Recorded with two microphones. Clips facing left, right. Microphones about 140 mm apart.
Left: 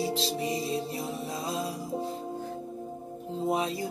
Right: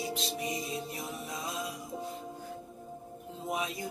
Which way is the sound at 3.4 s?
30° left (ahead or behind).